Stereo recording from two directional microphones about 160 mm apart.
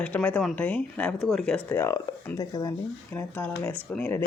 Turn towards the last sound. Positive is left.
turn(degrees=10)  # may be behind; listen again after turning